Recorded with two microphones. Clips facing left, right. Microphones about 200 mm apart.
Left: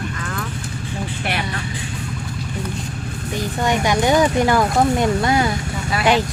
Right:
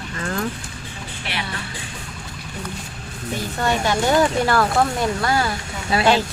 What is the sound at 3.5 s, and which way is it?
Speech, 15° left (ahead or behind).